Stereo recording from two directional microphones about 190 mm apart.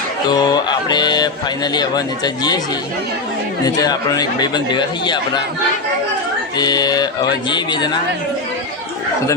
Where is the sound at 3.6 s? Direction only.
20° left (ahead or behind).